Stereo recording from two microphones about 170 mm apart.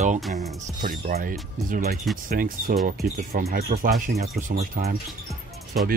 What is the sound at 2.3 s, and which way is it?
Speech, 55° right (ahead or behind).